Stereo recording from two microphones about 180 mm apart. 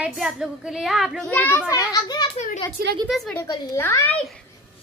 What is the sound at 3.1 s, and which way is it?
Speech, centre (ahead or behind).